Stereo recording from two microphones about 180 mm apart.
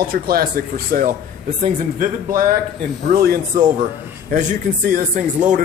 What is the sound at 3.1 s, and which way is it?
Speech, 55° right (ahead or behind).